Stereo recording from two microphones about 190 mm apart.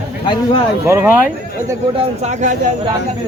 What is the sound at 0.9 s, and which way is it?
Speech, 10° right (ahead or behind).